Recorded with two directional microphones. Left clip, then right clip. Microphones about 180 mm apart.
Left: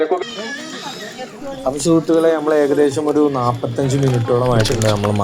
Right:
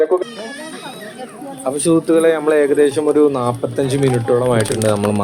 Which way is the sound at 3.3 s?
25° right (ahead or behind).